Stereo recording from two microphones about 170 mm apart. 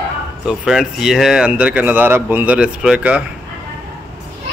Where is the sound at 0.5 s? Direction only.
5° right (ahead or behind).